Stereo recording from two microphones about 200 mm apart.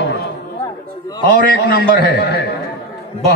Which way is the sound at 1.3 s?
60° left (ahead or behind).